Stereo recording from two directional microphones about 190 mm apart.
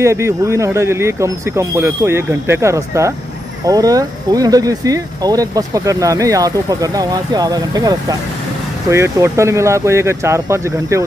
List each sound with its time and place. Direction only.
0.0 s speech: 15° right (ahead or behind)